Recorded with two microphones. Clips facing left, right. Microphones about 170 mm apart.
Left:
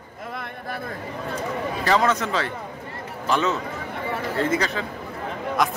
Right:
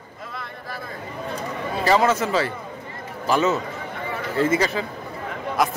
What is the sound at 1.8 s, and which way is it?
A man's voice, 5° right (ahead or behind).